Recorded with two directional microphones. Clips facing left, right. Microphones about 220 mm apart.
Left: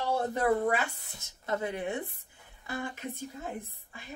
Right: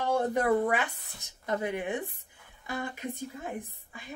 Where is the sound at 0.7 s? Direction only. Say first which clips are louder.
Even; 15° right (ahead or behind).